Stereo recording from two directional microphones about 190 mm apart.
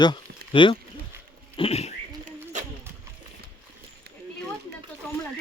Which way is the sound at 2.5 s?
40° right (ahead or behind).